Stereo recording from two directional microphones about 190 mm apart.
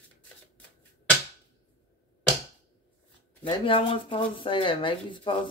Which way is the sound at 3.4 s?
25° left (ahead or behind).